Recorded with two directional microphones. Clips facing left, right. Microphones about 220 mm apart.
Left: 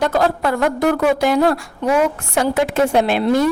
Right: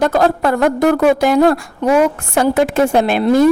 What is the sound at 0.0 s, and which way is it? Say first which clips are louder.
A woman's voice: right 3 dB; 45° right (ahead or behind).